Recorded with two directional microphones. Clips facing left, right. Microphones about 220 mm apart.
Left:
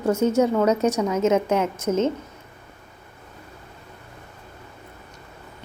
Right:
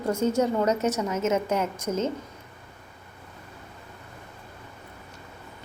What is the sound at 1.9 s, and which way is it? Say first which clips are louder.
Speech: left 6 dB; 25° left (ahead or behind).